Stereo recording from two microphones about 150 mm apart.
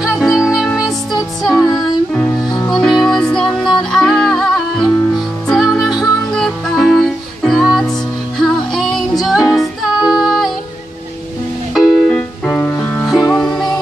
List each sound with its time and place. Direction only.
0.0 s music: centre (ahead or behind)
1.6 s music: 25° left (ahead or behind)
2.1 s music: 10° left (ahead or behind)
11.7 s music: centre (ahead or behind)
12.4 s music: 15° left (ahead or behind)
13.0 s music: centre (ahead or behind)